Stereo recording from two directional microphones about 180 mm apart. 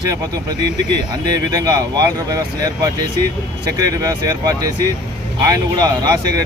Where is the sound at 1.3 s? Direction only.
20° right (ahead or behind).